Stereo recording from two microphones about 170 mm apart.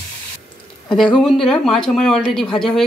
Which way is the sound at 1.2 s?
5° left (ahead or behind).